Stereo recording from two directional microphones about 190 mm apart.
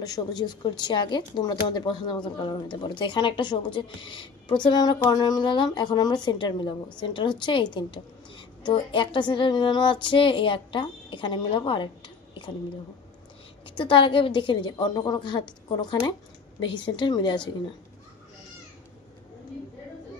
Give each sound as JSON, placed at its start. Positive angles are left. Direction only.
{"t": 0.0, "sound": "speech", "side_deg": 20}
{"t": 13.7, "sound": "speech", "side_deg": 25}